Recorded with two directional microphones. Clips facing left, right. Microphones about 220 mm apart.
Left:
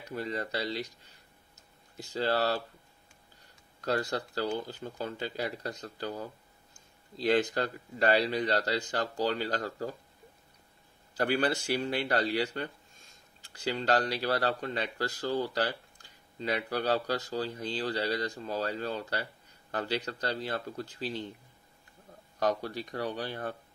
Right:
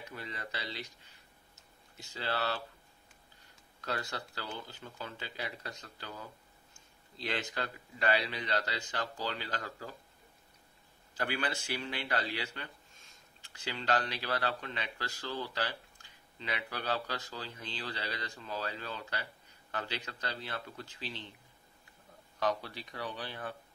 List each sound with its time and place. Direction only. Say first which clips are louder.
0.1 s speech: left 11 dB; 40° left (ahead or behind)
1.5 s tick-tock: left 1 dB; 40° left (ahead or behind)
3.8 s speech: left 8 dB; 35° left (ahead or behind)
11.1 s speech: left 8 dB; 40° left (ahead or behind)
22.4 s speech: left 4 dB; 45° left (ahead or behind)